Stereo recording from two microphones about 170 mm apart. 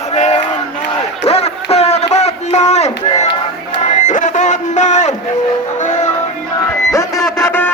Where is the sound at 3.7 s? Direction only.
45° left (ahead or behind).